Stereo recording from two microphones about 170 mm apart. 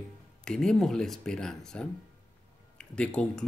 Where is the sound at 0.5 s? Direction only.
5° left (ahead or behind).